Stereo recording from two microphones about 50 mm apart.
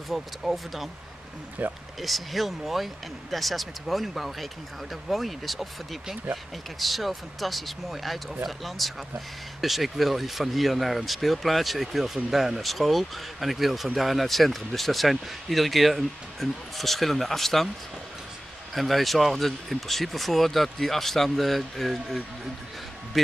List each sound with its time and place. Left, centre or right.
0.1 s speech: centre
1.6 s speech: right
2.0 s speech: centre
18.8 s speech: centre